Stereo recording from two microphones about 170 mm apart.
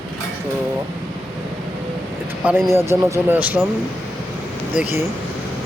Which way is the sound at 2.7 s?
15° right (ahead or behind).